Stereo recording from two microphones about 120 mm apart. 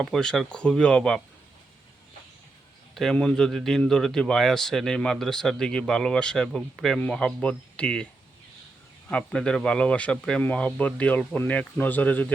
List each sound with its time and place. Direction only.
0.0 s a man's voice: 5° left (ahead or behind)
2.9 s a man's voice: 5° left (ahead or behind)
9.0 s speech: 5° left (ahead or behind)